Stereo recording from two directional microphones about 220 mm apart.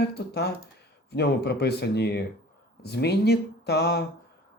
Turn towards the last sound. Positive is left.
turn(degrees=45)  # may be behind; listen again after turning